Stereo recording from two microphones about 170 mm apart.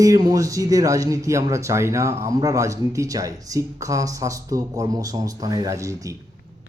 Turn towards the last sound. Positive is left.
turn(degrees=-20)  # may be behind; listen again after turning